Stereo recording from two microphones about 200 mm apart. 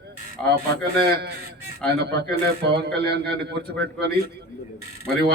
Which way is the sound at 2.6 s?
55° right (ahead or behind).